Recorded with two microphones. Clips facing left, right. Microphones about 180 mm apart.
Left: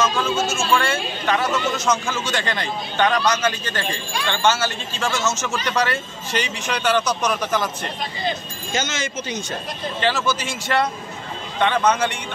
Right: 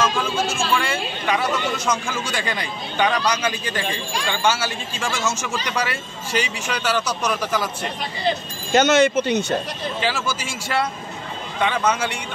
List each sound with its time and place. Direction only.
0.5 s a sound: 10° right (ahead or behind)
1.9 s speech: 10° right (ahead or behind)
8.7 s speech: 65° right (ahead or behind)
9.9 s speech: 10° right (ahead or behind)